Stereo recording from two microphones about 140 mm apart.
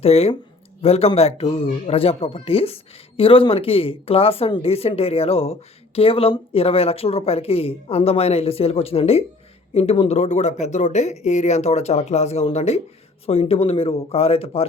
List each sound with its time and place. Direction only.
0.0 s speech: 45° left (ahead or behind)